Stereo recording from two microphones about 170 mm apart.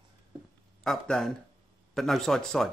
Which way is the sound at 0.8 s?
Centre (ahead or behind).